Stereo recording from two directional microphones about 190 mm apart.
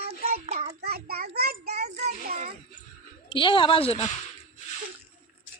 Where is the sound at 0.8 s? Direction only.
55° right (ahead or behind).